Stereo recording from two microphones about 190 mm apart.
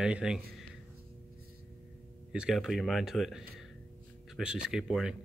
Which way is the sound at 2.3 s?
5° right (ahead or behind).